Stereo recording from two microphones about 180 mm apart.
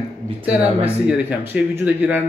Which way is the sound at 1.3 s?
10° right (ahead or behind).